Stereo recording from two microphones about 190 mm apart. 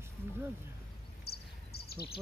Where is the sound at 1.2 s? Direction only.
55° left (ahead or behind).